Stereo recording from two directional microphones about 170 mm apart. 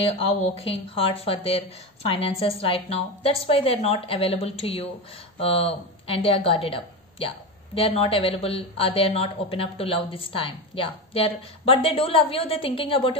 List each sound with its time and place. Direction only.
0.3 s speech: 35° left (ahead or behind)